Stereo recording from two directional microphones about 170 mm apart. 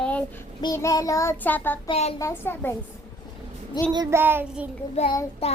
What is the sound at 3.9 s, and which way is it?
Speech, 20° right (ahead or behind).